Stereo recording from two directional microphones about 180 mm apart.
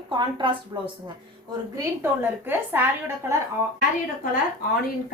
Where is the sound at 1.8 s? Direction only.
10° right (ahead or behind).